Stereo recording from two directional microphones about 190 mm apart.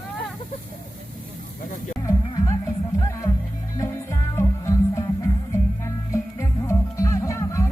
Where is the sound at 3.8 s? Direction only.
15° left (ahead or behind).